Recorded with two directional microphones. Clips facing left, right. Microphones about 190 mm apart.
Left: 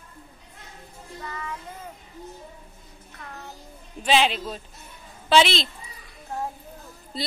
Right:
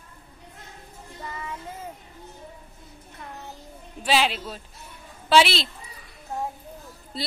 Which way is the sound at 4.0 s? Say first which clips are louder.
Left 2 dB; 5° right (ahead or behind).